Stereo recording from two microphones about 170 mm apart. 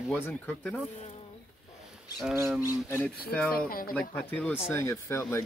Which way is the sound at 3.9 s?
10° left (ahead or behind).